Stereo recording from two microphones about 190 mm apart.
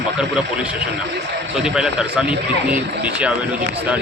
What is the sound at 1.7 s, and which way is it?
Speech, 5° right (ahead or behind).